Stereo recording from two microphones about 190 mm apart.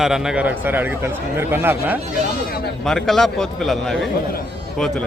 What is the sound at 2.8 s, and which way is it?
A man's voice, centre (ahead or behind).